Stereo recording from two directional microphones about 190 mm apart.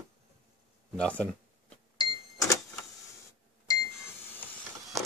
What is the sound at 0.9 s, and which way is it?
Speech, 5° left (ahead or behind).